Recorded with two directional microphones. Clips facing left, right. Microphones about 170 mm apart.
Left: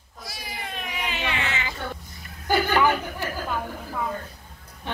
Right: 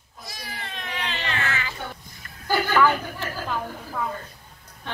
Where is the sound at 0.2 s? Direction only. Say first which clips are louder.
Left 1 dB; 5° left (ahead or behind).